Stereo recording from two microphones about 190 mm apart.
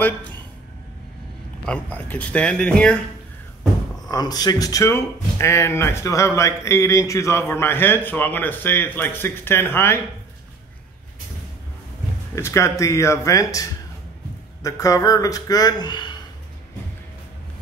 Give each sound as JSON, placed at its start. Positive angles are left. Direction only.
{"t": 1.7, "sound": "speech", "side_deg": 10}
{"t": 4.1, "sound": "speech", "side_deg": 20}
{"t": 12.4, "sound": "speech", "side_deg": 15}